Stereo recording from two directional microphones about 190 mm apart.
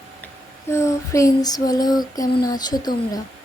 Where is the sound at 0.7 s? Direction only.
15° left (ahead or behind).